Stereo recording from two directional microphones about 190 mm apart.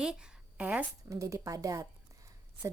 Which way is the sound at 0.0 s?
5° right (ahead or behind).